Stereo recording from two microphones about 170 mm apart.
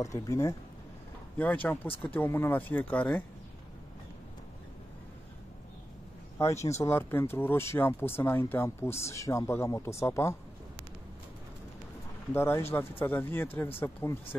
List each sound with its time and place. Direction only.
0.0 s speech: 15° left (ahead or behind)
6.3 s speech: 15° left (ahead or behind)
12.4 s speech: 15° left (ahead or behind)